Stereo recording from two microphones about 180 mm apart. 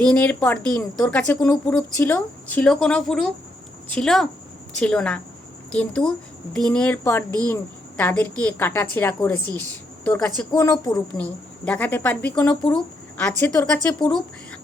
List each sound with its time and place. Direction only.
0.0 s speech: 5° left (ahead or behind)